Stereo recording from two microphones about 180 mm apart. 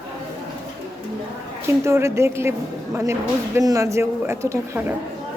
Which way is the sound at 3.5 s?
15° right (ahead or behind).